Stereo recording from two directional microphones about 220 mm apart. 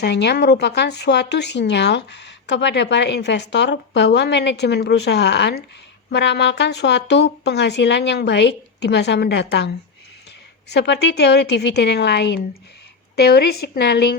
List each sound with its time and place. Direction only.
0.0 s speech: 50° left (ahead or behind)